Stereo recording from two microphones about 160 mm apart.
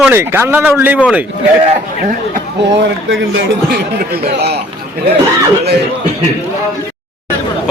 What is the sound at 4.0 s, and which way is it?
Speech, 90° right.